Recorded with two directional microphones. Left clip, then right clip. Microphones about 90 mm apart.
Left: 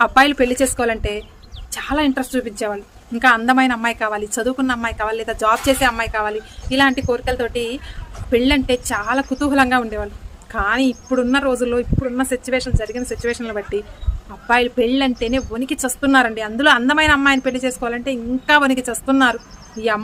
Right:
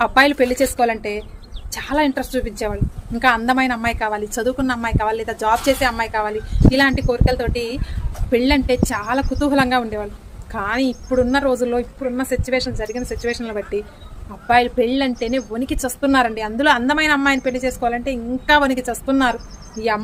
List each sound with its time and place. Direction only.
0.0 s speech: 30° left (ahead or behind)
12.8 s speech: 40° left (ahead or behind)
13.3 s speech: 25° left (ahead or behind)